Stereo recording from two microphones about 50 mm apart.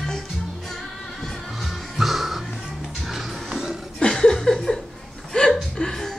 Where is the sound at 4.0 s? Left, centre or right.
Centre.